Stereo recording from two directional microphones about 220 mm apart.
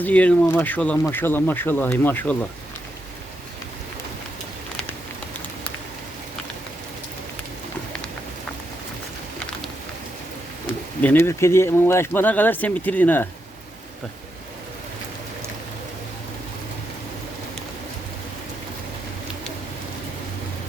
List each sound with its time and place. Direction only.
0.0 s speech: 5° left (ahead or behind)
11.0 s speech: 10° left (ahead or behind)